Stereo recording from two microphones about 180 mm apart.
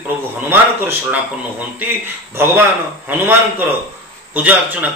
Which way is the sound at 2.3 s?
10° right (ahead or behind).